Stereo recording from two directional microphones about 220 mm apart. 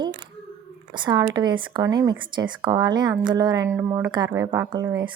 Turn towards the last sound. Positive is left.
turn(degrees=-15)  # may be behind; listen again after turning